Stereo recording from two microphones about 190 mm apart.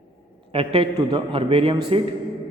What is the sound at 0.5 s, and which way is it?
A man's voice, 30° right (ahead or behind).